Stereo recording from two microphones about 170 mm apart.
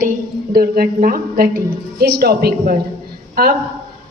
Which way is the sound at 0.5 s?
60° right (ahead or behind).